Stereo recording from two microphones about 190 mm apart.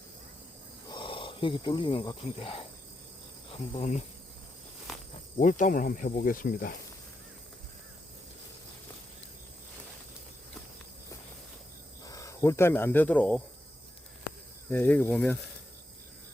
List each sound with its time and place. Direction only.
0.9 s speech: 25° left (ahead or behind)
4.9 s insect: centre (ahead or behind)
5.4 s cricket: 40° left (ahead or behind)
12.0 s speech: 15° left (ahead or behind)
14.7 s speech: 10° left (ahead or behind)